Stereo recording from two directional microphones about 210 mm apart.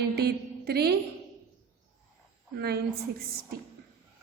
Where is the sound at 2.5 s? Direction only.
50° right (ahead or behind).